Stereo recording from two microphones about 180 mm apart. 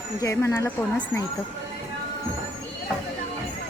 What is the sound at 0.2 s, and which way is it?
Speech, 15° left (ahead or behind).